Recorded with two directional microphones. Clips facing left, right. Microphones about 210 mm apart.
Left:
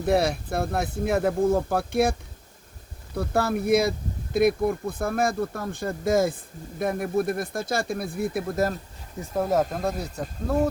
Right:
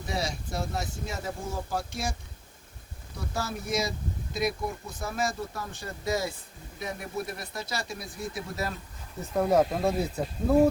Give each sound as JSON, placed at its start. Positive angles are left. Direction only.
{"t": 0.0, "sound": "speech", "side_deg": 60}
{"t": 3.2, "sound": "speech", "side_deg": 60}
{"t": 9.3, "sound": "speech", "side_deg": 0}